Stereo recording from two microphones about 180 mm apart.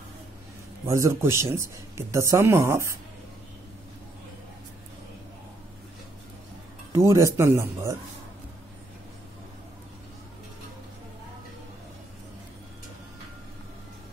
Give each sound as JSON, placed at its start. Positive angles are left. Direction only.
{"t": 0.8, "sound": "speech", "side_deg": -15}
{"t": 6.9, "sound": "speech", "side_deg": -15}